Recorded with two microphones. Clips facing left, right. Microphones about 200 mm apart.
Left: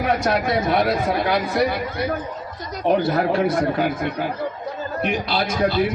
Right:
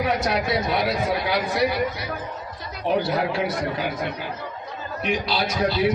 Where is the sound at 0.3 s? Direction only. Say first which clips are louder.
Left 3 dB; 50° left (ahead or behind).